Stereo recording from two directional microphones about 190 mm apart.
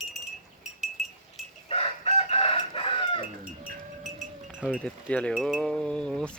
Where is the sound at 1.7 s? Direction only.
30° left (ahead or behind).